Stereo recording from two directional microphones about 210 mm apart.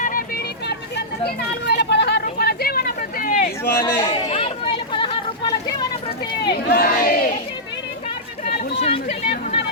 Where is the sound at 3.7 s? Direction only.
20° left (ahead or behind).